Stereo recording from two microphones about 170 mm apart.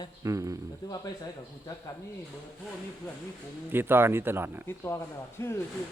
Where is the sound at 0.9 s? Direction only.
20° left (ahead or behind).